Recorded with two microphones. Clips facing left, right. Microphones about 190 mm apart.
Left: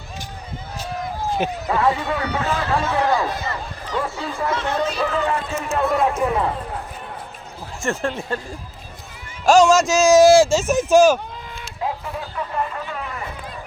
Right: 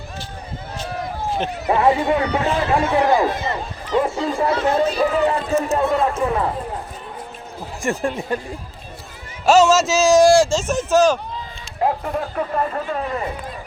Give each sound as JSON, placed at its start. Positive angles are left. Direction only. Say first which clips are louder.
{"t": 1.6, "sound": "speech", "louder": "right 6 dB", "side_deg": -20}
{"t": 4.4, "sound": "speech", "louder": "right 4 dB", "side_deg": -35}
{"t": 4.9, "sound": "speech", "louder": "right 4 dB", "side_deg": -10}
{"t": 5.3, "sound": "speech", "louder": "right 4 dB", "side_deg": -35}
{"t": 7.8, "sound": "speech", "louder": "right 1 dB", "side_deg": -15}
{"t": 9.5, "sound": "speech", "louder": "even", "side_deg": -5}
{"t": 11.8, "sound": "speech", "louder": "right 6 dB", "side_deg": -50}